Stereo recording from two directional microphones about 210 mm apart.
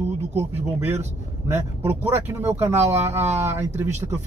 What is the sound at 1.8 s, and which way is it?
Speech, 10° right (ahead or behind).